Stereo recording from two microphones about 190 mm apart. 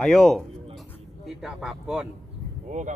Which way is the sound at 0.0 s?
Centre (ahead or behind).